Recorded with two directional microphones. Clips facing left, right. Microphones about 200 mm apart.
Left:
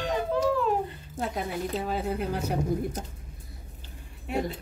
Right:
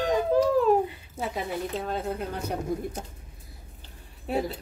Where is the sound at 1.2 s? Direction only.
Centre (ahead or behind).